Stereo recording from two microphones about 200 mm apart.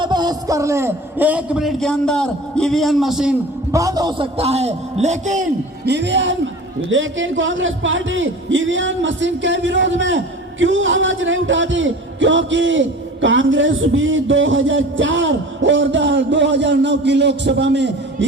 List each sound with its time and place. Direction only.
0.0 s a man's voice: 20° right (ahead or behind); by 3.3 s centre (ahead or behind)
3.7 s a man's voice: 15° right (ahead or behind); by 5.5 s 35° right (ahead or behind)
5.8 s a man's voice: 60° right (ahead or behind)